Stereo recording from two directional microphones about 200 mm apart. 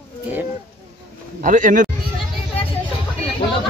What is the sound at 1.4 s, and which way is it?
Speech, 40° right (ahead or behind).